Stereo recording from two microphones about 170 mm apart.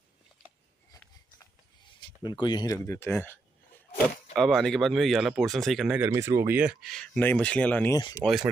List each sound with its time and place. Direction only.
2.2 s speech: 25° left (ahead or behind)
4.4 s speech: centre (ahead or behind)
5.9 s speech: 15° right (ahead or behind); by 7.9 s 10° left (ahead or behind)
7.9 s speech: 20° left (ahead or behind)
8.2 s speech: centre (ahead or behind)